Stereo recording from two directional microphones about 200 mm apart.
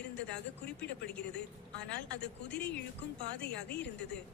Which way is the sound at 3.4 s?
55° left (ahead or behind).